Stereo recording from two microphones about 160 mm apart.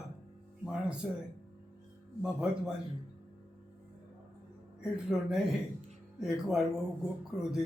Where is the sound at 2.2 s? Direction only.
5° right (ahead or behind).